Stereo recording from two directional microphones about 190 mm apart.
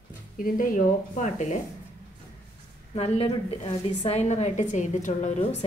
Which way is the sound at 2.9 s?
30° left (ahead or behind).